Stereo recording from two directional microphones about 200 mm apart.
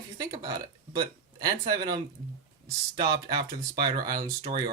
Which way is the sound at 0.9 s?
20° right (ahead or behind).